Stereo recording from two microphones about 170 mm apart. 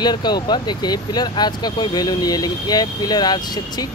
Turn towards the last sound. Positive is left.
turn(degrees=25)  # may be behind; listen again after turning